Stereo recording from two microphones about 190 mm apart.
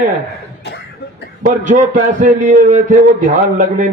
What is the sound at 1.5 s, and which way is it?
A man's voice, 40° right (ahead or behind).